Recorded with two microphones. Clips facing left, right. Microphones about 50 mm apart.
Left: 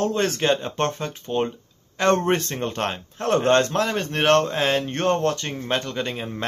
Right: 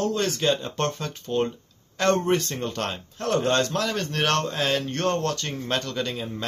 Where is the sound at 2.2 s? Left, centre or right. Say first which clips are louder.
Left 1 dB; left.